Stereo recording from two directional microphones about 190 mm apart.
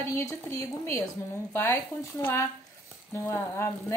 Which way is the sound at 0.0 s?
15° left (ahead or behind).